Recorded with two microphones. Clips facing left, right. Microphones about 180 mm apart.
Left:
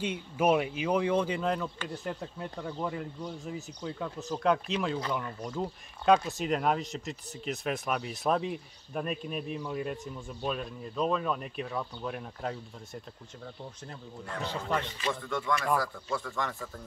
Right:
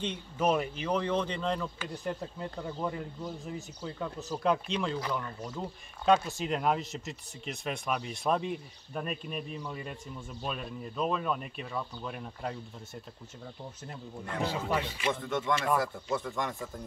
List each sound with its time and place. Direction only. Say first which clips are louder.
0.0 s speech: left 2 dB; 10° left (ahead or behind)
5.5 s speech: left 4 dB; centre (ahead or behind)
14.4 s speech: right 1 dB; 5° right (ahead or behind)
15.2 s speech: even; 20° right (ahead or behind)